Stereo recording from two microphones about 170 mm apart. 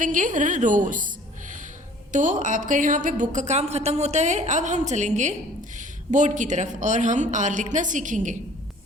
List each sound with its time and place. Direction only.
0.0 s a woman's voice: 50° right (ahead or behind)